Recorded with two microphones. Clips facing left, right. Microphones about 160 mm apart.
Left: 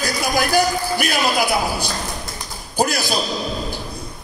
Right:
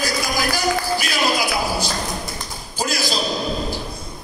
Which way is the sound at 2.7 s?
55° left (ahead or behind).